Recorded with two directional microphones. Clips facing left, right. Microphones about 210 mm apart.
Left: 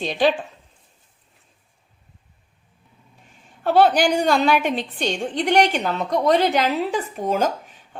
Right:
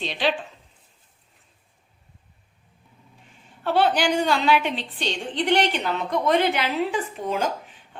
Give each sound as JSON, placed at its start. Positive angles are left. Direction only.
{"t": 0.0, "sound": "a woman's voice", "side_deg": 45}
{"t": 3.6, "sound": "a woman's voice", "side_deg": 45}